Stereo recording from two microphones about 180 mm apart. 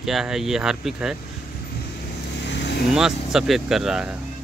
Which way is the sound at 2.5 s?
70° left (ahead or behind).